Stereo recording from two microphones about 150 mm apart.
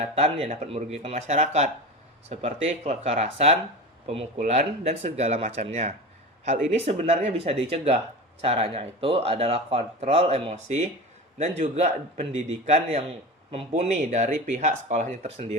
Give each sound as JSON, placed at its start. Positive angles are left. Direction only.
{"t": 0.0, "sound": "speech", "side_deg": -40}